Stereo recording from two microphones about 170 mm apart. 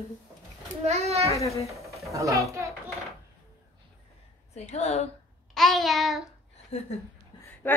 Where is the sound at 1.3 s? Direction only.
20° left (ahead or behind).